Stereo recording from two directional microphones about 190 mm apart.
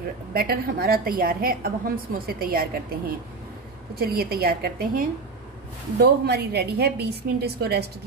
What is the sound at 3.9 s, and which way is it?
A woman's voice, 55° right (ahead or behind).